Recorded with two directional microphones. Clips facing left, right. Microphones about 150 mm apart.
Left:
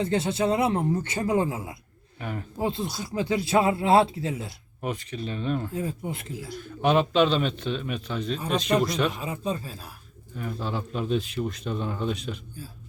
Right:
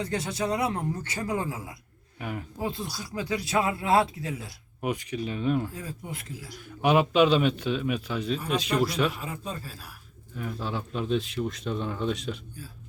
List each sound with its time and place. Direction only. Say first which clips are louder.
0.0 s speech: left 5 dB; 25° left (ahead or behind)
2.1 s speech: left 1 dB; 10° right (ahead or behind)
2.6 s speech: left 6 dB; 25° left (ahead or behind)
4.8 s a man's voice: right 2 dB; 10° right (ahead or behind)
5.7 s speech: left 7 dB; 25° left (ahead or behind)
6.6 s a man's voice: even; 10° right (ahead or behind)
9.2 s speech: left 6 dB; 20° left (ahead or behind)
10.3 s speech: left 1 dB; centre (ahead or behind)